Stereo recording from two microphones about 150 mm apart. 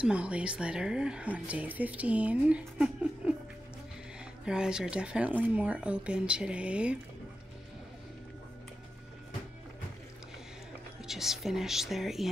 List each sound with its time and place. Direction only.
0.0 s a woman's voice: 10° right (ahead or behind)
4.5 s a woman's voice: 5° right (ahead or behind)
11.1 s a woman's voice: centre (ahead or behind)